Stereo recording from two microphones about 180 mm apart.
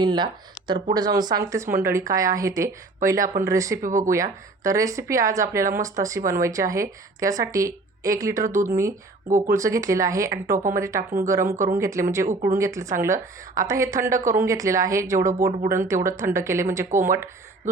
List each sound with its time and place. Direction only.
0.0 s a woman's voice: 25° right (ahead or behind)
3.8 s speech: 45° right (ahead or behind)
4.1 s a woman's voice: 20° right (ahead or behind)